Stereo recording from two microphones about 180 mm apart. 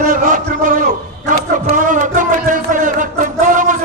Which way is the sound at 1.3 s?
45° right (ahead or behind).